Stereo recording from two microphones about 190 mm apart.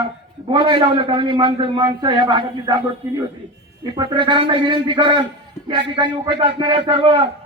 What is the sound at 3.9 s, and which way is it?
A man's voice, 25° right (ahead or behind).